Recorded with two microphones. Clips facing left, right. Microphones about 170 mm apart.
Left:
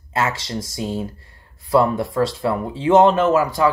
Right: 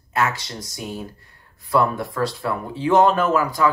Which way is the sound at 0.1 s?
25° left (ahead or behind).